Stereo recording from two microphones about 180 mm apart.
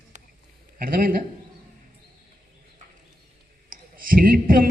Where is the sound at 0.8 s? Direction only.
50° right (ahead or behind).